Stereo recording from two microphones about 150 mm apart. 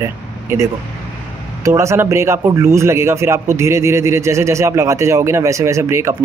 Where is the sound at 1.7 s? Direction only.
20° right (ahead or behind).